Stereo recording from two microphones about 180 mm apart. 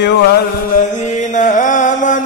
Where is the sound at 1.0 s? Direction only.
45° left (ahead or behind).